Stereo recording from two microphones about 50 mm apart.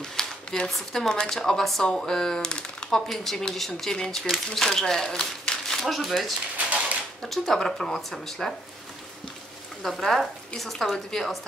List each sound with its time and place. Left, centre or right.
0.0 s a sound: centre
0.7 s speech: centre
1.0 s speech: centre
5.9 s speech: centre
9.8 s speech: centre